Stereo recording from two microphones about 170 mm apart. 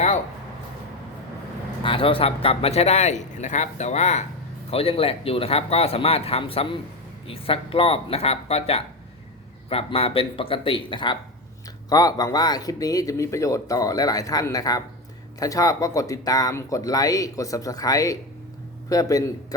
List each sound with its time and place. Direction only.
1.8 s speech: 30° left (ahead or behind)